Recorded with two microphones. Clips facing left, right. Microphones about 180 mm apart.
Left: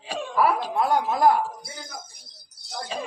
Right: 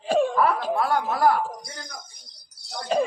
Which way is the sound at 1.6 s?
5° left (ahead or behind).